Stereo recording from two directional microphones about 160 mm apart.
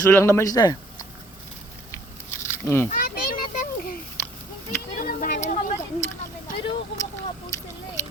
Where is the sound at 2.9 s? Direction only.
65° left (ahead or behind).